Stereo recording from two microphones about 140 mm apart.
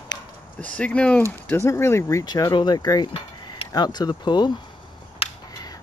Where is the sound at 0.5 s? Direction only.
10° left (ahead or behind).